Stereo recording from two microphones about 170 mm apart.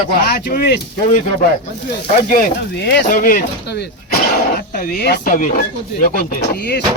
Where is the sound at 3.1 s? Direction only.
55° left (ahead or behind).